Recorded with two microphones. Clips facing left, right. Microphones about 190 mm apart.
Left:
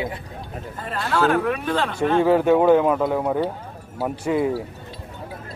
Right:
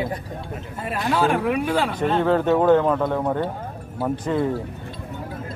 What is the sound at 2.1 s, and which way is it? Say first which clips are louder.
Speech: left 3 dB; 10° left (ahead or behind).